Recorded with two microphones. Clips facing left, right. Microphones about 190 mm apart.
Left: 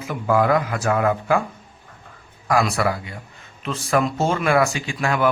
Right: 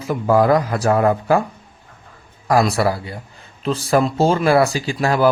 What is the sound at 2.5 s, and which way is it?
A man's voice, 35° right (ahead or behind).